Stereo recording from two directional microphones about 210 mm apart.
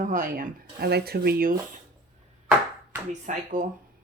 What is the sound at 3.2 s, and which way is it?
Speech, 40° right (ahead or behind).